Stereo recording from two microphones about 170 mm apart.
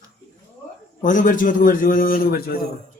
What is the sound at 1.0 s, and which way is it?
A man's voice, 50° left (ahead or behind).